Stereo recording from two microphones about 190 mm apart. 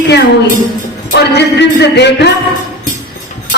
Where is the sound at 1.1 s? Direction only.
60° left (ahead or behind).